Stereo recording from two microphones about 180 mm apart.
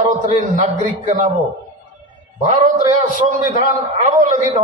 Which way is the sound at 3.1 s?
45° right (ahead or behind).